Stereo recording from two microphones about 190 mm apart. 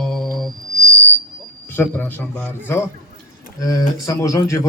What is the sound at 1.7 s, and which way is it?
A man's voice, 10° left (ahead or behind).